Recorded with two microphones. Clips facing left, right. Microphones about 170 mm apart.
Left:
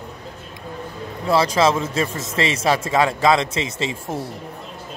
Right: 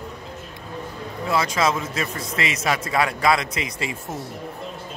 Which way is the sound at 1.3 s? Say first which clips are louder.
Left 5 dB; 30° left (ahead or behind).